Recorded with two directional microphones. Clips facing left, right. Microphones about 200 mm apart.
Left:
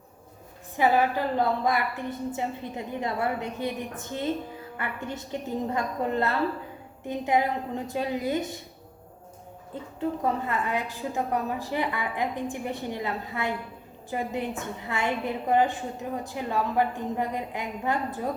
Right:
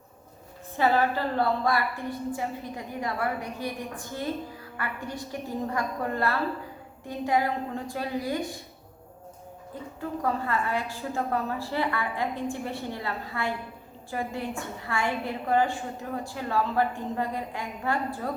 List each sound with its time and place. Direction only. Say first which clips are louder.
0.8 s a woman's voice: left 1 dB; 15° left (ahead or behind)
10.0 s a woman's voice: left 2 dB; 20° left (ahead or behind)